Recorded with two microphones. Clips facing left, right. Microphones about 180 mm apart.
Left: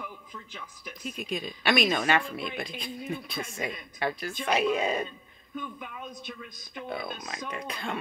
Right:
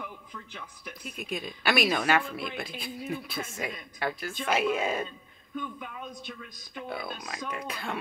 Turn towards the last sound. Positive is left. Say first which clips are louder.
# even
turn(degrees=-5)  # may be behind; listen again after turning